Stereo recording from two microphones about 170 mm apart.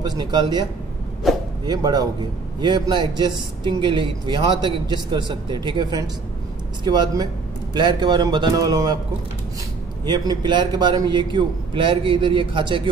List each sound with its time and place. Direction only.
0.0 s a man's voice: 25° right (ahead or behind)
1.3 s a sound: centre (ahead or behind)
1.7 s a man's voice: 25° right (ahead or behind)
10.0 s a man's voice: 25° right (ahead or behind)